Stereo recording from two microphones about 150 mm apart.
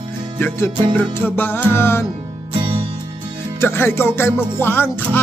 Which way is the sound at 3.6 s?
15° left (ahead or behind).